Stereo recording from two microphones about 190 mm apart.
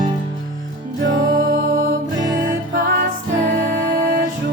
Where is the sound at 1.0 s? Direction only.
75° right (ahead or behind).